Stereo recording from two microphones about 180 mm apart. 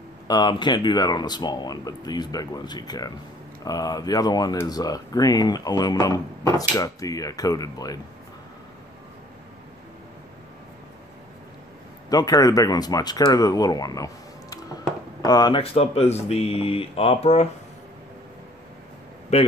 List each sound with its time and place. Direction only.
0.3 s speech: 25° left (ahead or behind)
12.1 s speech: 20° left (ahead or behind)